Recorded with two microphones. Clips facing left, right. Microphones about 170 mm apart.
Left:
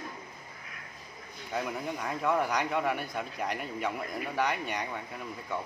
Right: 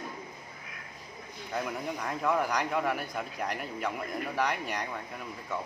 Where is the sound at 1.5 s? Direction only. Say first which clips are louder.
Even; centre (ahead or behind).